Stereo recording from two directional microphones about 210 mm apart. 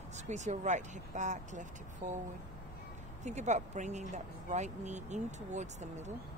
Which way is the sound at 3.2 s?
35° right (ahead or behind).